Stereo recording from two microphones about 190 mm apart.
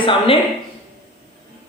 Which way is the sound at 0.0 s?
25° left (ahead or behind).